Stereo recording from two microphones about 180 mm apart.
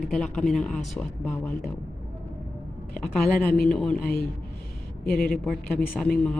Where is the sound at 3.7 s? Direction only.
5° left (ahead or behind).